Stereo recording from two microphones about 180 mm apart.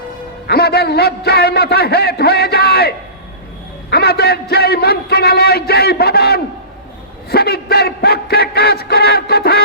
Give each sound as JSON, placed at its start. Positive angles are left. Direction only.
{"t": 0.4, "sound": "a man's voice", "side_deg": 60}
{"t": 7.3, "sound": "music", "side_deg": 60}